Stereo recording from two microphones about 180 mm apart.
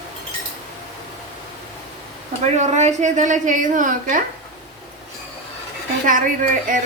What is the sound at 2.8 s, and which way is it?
A woman's voice, 40° right (ahead or behind).